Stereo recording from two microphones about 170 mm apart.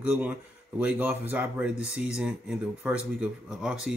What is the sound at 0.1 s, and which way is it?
Speech, 10° right (ahead or behind).